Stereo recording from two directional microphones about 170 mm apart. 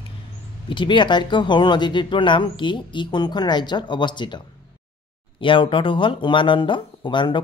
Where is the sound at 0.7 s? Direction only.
30° left (ahead or behind).